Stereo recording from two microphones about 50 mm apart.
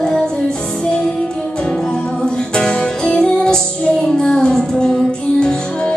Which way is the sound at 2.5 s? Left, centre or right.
Centre.